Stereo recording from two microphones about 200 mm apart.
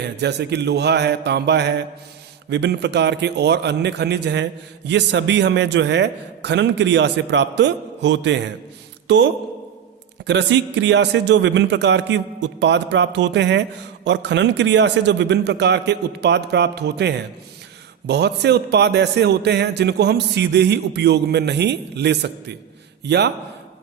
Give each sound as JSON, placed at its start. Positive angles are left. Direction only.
{"t": 0.0, "sound": "a man's voice", "side_deg": -55}